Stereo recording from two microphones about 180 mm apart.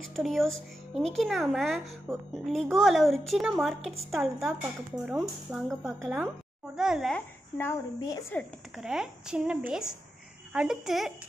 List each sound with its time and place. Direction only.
0.1 s speech: centre (ahead or behind)
8.7 s speech: 5° right (ahead or behind)